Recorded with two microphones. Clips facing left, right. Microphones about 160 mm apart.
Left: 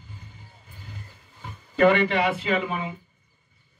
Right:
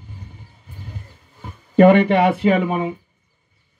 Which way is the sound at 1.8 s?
50° right (ahead or behind).